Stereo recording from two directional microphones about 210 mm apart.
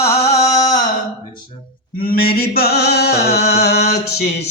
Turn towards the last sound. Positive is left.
turn(degrees=50)  # may be behind; listen again after turning